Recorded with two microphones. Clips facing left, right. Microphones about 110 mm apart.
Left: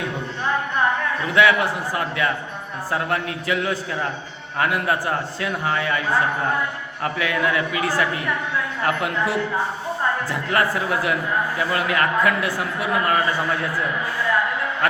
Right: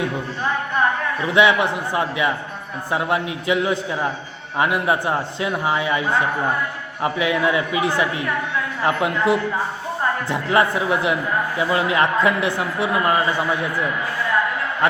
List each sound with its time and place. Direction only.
1.3 s a man's voice: 20° right (ahead or behind)